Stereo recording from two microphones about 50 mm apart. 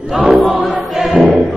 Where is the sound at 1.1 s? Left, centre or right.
Right.